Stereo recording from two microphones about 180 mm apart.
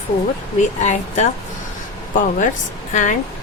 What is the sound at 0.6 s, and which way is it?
Speech, 40° left (ahead or behind).